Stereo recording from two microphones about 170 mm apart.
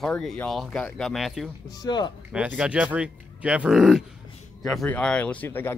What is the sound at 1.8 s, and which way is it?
Speech, 25° left (ahead or behind).